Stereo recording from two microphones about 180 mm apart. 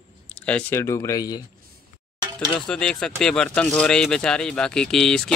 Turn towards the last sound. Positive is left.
turn(degrees=5)  # may be behind; listen again after turning